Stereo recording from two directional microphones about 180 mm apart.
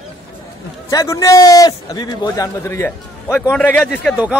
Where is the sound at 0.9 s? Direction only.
15° left (ahead or behind).